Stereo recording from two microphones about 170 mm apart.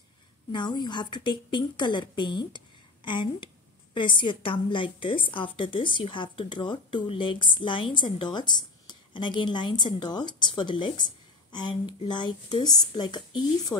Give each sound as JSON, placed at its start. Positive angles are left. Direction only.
{"t": 0.5, "sound": "a woman's voice", "side_deg": 25}